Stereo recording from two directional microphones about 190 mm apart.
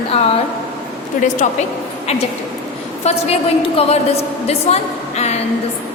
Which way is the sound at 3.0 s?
35° left (ahead or behind).